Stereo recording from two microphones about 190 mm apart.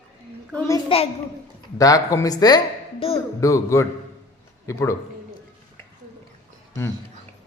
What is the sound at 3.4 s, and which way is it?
Speech, 15° left (ahead or behind).